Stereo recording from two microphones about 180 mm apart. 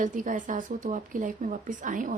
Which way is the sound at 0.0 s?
45° right (ahead or behind).